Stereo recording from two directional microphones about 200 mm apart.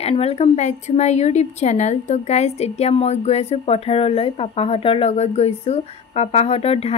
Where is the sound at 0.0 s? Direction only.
30° left (ahead or behind).